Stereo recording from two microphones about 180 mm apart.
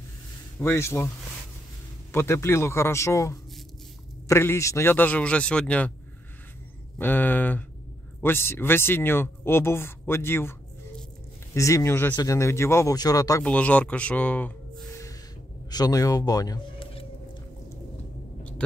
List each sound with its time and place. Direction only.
0.6 s speech: 15° left (ahead or behind)
2.1 s speech: 15° left (ahead or behind)
7.0 s speech: 10° left (ahead or behind)
11.5 s speech: 15° left (ahead or behind)
13.4 s speech: 5° left (ahead or behind)
15.7 s a sound: 20° left (ahead or behind)